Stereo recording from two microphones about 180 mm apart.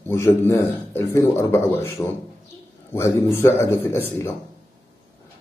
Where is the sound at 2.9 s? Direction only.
15° left (ahead or behind).